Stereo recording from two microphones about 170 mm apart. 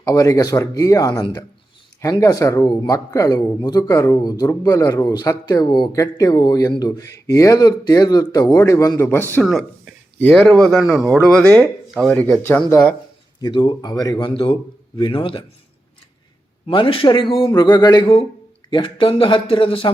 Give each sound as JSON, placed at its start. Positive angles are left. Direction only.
{"t": 0.0, "sound": "speech", "side_deg": 20}
{"t": 9.5, "sound": "a sound", "side_deg": 0}
{"t": 10.3, "sound": "speech", "side_deg": 5}
{"t": 13.4, "sound": "speech", "side_deg": 30}
{"t": 16.6, "sound": "speech", "side_deg": 30}